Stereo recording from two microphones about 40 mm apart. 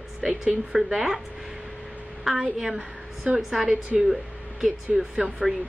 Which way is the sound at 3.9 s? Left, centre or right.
Centre.